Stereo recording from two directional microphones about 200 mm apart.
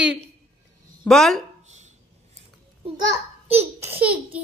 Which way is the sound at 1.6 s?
35° right (ahead or behind).